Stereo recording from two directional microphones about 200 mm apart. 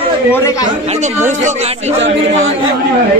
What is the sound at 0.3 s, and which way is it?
Speech, 15° left (ahead or behind).